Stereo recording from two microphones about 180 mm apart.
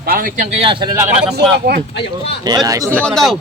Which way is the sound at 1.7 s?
65° right (ahead or behind).